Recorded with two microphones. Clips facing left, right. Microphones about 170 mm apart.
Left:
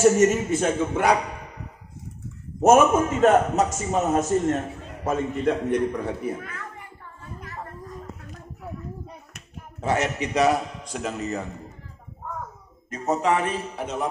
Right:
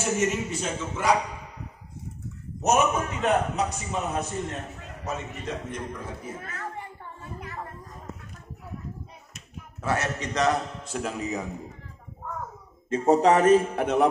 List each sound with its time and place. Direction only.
0.0 s a man's voice: 40° left (ahead or behind); by 1.1 s 60° left (ahead or behind)
2.6 s a man's voice: 50° left (ahead or behind); by 6.3 s 65° left (ahead or behind)
9.8 s a man's voice: 20° left (ahead or behind); by 11.6 s 5° right (ahead or behind)
12.9 s a man's voice: 30° right (ahead or behind); by 14.0 s 60° right (ahead or behind)